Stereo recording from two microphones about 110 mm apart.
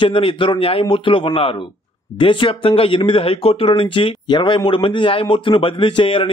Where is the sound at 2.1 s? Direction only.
50° left (ahead or behind).